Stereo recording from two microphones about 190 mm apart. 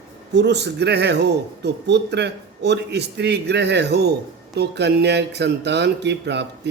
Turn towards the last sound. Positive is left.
turn(degrees=-65)  # may be behind; listen again after turning